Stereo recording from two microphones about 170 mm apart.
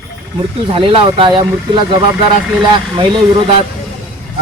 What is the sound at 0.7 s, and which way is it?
A man's voice, 30° right (ahead or behind).